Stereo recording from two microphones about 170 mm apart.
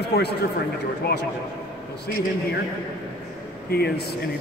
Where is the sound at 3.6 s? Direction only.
70° left (ahead or behind).